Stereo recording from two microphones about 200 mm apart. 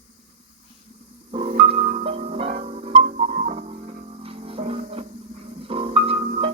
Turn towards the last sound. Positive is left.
turn(degrees=-30)  # may be behind; listen again after turning